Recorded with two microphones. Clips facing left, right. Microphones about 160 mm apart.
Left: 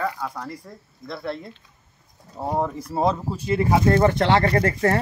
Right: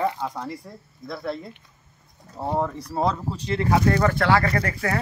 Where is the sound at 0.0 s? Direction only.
25° right (ahead or behind).